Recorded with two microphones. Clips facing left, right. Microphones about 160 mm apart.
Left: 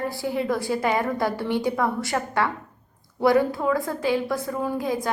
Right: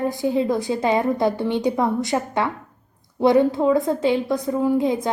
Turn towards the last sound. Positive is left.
turn(degrees=-25)  # may be behind; listen again after turning